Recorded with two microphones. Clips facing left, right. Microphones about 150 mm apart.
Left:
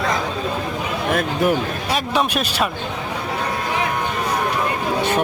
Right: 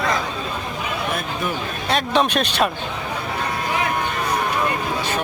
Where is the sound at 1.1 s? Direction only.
90° left.